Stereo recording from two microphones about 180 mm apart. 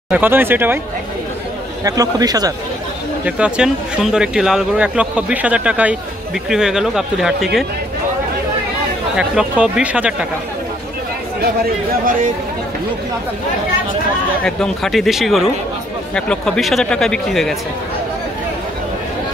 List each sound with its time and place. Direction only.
0.1 s speech: 10° right (ahead or behind)
1.9 s speech: 20° right (ahead or behind)
3.3 s speech: 5° right (ahead or behind)
9.1 s speech: 5° right (ahead or behind)
14.4 s speech: 5° left (ahead or behind)